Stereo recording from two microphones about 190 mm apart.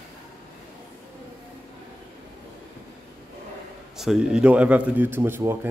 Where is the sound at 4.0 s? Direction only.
Centre (ahead or behind).